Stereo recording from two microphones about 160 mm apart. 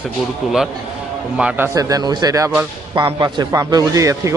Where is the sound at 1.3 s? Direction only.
5° right (ahead or behind).